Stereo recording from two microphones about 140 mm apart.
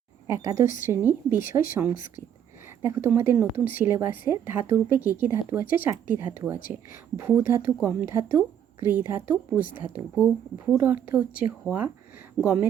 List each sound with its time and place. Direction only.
0.3 s a woman's voice: 20° right (ahead or behind)
10.7 s a woman's voice: 15° right (ahead or behind)